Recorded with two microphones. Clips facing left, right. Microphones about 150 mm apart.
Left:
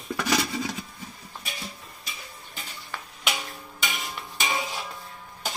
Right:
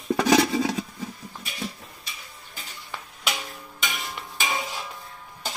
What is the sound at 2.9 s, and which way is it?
Music, 20° right (ahead or behind).